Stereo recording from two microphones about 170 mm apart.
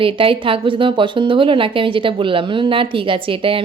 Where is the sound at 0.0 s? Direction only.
30° right (ahead or behind).